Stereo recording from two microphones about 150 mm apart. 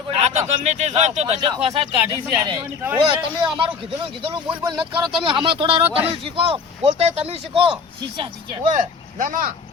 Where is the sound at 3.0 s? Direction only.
35° right (ahead or behind).